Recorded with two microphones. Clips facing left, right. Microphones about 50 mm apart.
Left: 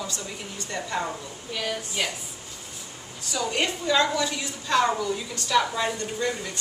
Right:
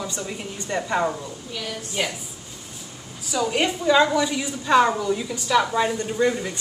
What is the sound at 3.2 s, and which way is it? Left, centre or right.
A woman's voice, centre.